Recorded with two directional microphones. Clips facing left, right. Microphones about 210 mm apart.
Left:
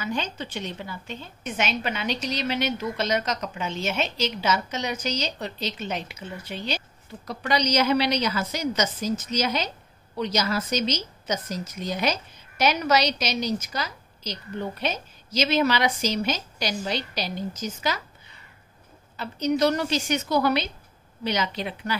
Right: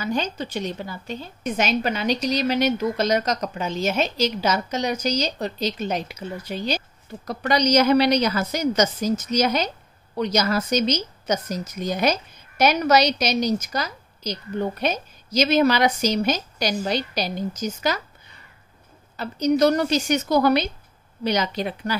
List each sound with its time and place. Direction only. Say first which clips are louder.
0.0 s a woman's voice: right 4 dB; 40° right (ahead or behind)
19.1 s a woman's voice: right 4 dB; 40° right (ahead or behind)